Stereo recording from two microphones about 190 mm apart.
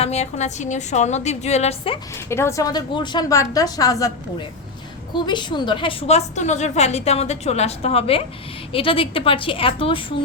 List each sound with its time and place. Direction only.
0.0 s a woman's voice: 35° left (ahead or behind)
2.1 s a woman's voice: 15° left (ahead or behind)